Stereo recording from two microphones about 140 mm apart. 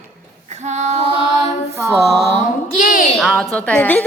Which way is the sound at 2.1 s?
Centre (ahead or behind).